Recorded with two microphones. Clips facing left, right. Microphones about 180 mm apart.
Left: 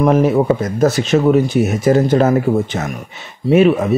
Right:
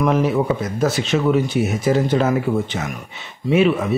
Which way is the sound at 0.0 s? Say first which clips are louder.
Left 5 dB; 45° left (ahead or behind).